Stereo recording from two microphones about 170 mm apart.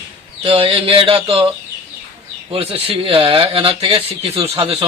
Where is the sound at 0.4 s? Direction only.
35° right (ahead or behind).